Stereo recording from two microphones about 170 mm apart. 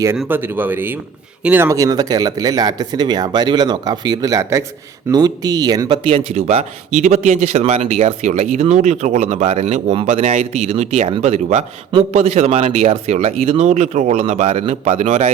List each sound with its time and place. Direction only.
0.3 s speech: 10° right (ahead or behind)
6.1 s speech: 35° right (ahead or behind)